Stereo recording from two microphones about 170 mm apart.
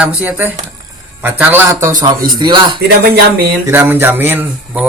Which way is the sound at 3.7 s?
15° right (ahead or behind).